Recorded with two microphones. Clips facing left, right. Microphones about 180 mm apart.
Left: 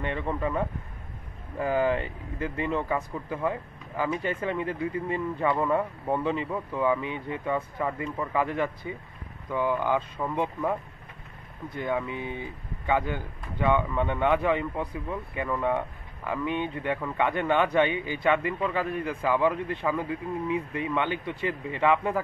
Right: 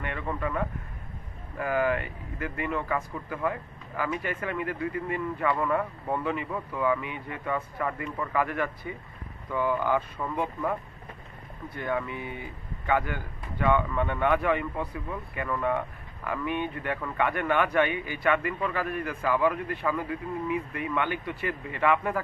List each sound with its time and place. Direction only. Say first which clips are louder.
0.0 s speech: left 3 dB; 25° left (ahead or behind)